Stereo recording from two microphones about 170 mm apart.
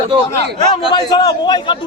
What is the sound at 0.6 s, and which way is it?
A man's voice, 25° left (ahead or behind).